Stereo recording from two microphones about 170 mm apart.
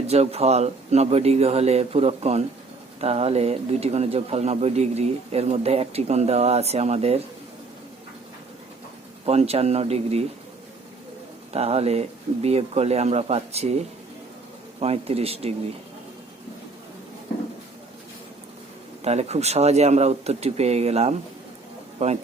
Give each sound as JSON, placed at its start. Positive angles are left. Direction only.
{"t": 0.1, "sound": "speech", "side_deg": -40}
{"t": 9.2, "sound": "speech", "side_deg": -35}
{"t": 11.5, "sound": "speech", "side_deg": -35}
{"t": 19.0, "sound": "speech", "side_deg": -40}